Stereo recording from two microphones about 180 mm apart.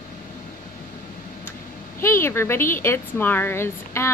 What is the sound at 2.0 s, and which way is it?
Speech, 15° left (ahead or behind).